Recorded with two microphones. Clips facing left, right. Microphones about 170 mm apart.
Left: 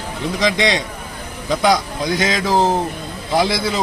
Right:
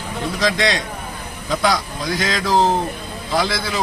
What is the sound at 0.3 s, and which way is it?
A man's voice, 20° left (ahead or behind).